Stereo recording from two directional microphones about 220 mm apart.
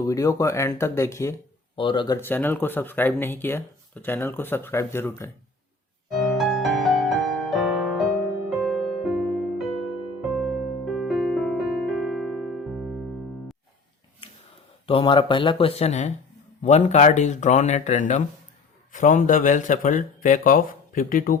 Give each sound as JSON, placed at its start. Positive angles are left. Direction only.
{"t": 0.0, "sound": "speech", "side_deg": 15}
{"t": 2.2, "sound": "speech", "side_deg": 10}
{"t": 6.1, "sound": "music", "side_deg": 0}
{"t": 10.3, "sound": "electric piano", "side_deg": 0}
{"t": 14.8, "sound": "speech", "side_deg": 25}